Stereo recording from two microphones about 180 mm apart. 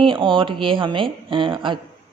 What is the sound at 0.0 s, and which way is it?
A man's voice, 30° right (ahead or behind).